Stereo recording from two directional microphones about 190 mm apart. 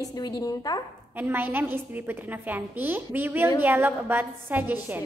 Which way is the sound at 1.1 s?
10° right (ahead or behind).